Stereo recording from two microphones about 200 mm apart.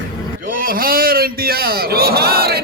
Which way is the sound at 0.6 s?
45° right (ahead or behind).